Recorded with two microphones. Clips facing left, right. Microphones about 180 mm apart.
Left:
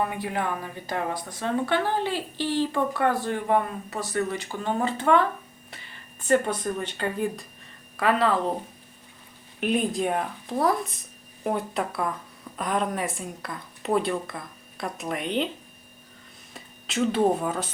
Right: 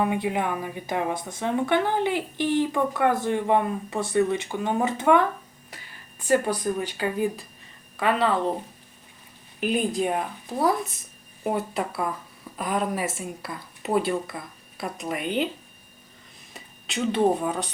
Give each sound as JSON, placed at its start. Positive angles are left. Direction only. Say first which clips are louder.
{"t": 0.0, "sound": "speech", "louder": "right 3 dB", "side_deg": -20}
{"t": 6.2, "sound": "speech", "louder": "right 1 dB", "side_deg": -5}
{"t": 9.6, "sound": "speech", "louder": "even", "side_deg": 0}
{"t": 16.6, "sound": "speech", "louder": "left 3 dB", "side_deg": 0}